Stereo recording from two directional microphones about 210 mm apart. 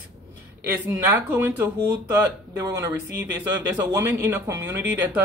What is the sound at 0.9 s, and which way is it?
Speech, 10° right (ahead or behind).